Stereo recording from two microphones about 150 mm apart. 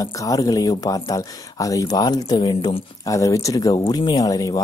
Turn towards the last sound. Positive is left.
turn(degrees=25)  # may be behind; listen again after turning